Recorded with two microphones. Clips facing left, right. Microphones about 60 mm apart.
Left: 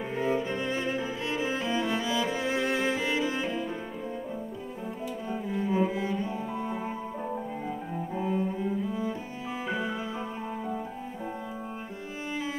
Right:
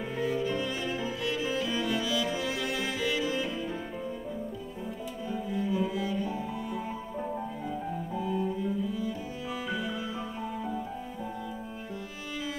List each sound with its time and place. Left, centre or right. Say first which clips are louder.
0.1 s cello: left 1 dB; left
5.3 s cello: left 2 dB; left
9.7 s music: left 3 dB; left